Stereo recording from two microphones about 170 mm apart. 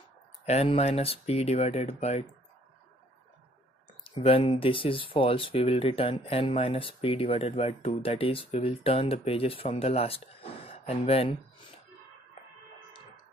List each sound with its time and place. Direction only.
0.5 s speech: 40° left (ahead or behind)
4.0 s speech: 35° left (ahead or behind)